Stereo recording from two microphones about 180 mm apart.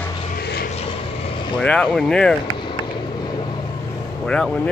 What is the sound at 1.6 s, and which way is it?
Speech, centre (ahead or behind).